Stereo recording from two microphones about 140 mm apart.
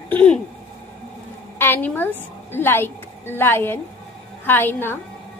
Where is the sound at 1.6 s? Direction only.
15° left (ahead or behind).